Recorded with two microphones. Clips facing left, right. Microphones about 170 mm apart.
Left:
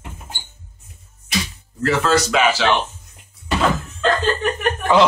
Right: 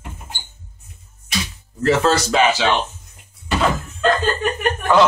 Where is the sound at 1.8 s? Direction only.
30° right (ahead or behind).